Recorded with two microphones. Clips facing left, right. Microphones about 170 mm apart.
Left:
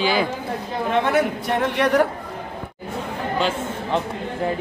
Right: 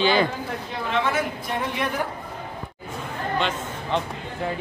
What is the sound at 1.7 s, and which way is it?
Speech, 70° left (ahead or behind).